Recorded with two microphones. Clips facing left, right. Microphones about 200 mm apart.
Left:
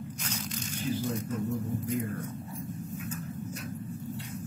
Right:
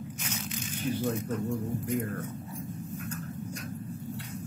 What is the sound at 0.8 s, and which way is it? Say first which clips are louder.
Speech: right 2 dB; 65° right (ahead or behind).